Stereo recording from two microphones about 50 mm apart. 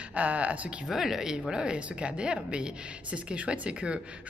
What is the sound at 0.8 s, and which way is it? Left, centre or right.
A woman's voice, centre.